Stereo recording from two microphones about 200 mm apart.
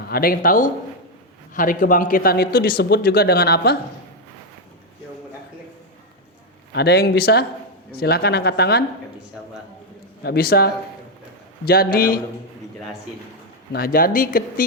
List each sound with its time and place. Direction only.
0.1 s a man's voice: 45° left (ahead or behind)
6.7 s a man's voice: 55° left (ahead or behind)
10.2 s a man's voice: 50° left (ahead or behind)
13.7 s a man's voice: 50° left (ahead or behind)